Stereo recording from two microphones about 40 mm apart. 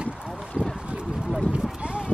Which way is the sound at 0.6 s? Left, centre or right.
Centre.